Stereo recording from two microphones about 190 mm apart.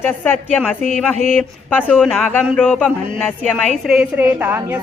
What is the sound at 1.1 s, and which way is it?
Speech, 35° right (ahead or behind).